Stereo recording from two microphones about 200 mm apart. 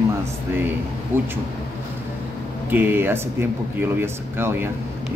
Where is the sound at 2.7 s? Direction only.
10° right (ahead or behind).